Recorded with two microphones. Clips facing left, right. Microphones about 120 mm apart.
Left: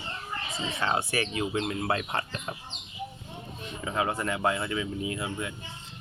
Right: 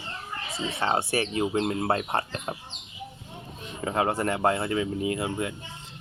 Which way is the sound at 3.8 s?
40° right (ahead or behind).